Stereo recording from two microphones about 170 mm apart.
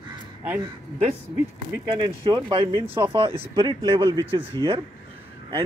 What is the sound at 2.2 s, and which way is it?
Speech, 30° right (ahead or behind).